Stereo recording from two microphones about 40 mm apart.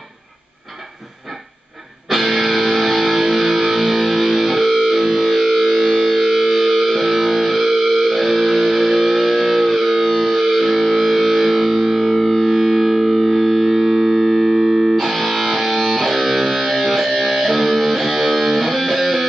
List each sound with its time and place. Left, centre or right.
2.0 s music: centre